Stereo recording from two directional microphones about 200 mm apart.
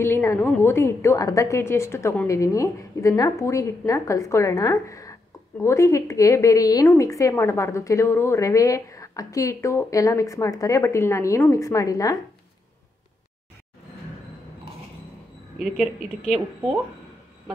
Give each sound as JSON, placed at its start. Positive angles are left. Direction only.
{"t": 0.0, "sound": "a woman's voice", "side_deg": 15}